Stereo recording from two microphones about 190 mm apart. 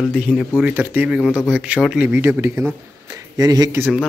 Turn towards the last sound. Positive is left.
turn(degrees=-15)  # may be behind; listen again after turning